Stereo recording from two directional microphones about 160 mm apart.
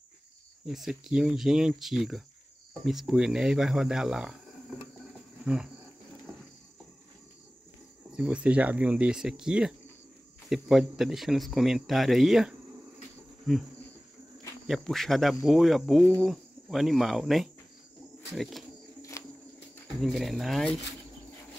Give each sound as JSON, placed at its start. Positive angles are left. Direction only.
{"t": 0.7, "sound": "speech", "side_deg": 0}
{"t": 5.4, "sound": "wild animals", "side_deg": -5}
{"t": 8.1, "sound": "speech", "side_deg": -5}
{"t": 14.7, "sound": "speech", "side_deg": 0}
{"t": 16.3, "sound": "cricket", "side_deg": 0}
{"t": 18.3, "sound": "speech", "side_deg": 0}
{"t": 19.2, "sound": "a sound", "side_deg": 20}
{"t": 20.0, "sound": "speech", "side_deg": 0}